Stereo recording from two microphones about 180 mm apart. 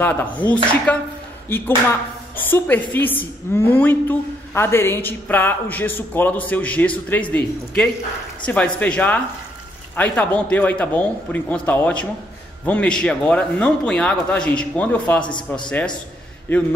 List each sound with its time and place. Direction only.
0.0 s a woman's voice: 10° left (ahead or behind)
15.3 s a man's voice: 25° left (ahead or behind)
16.5 s a woman's voice: 10° left (ahead or behind)